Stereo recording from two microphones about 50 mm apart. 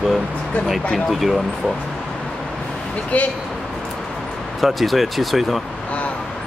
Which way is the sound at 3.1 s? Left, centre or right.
Left.